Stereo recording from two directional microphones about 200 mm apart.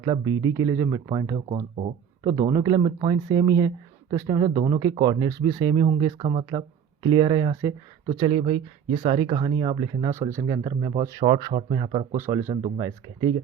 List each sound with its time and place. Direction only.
0.0 s speech: 20° right (ahead or behind)
12.1 s speech: 10° right (ahead or behind)